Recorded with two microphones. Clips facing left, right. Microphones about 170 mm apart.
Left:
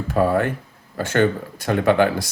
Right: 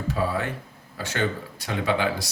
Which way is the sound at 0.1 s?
50° left (ahead or behind).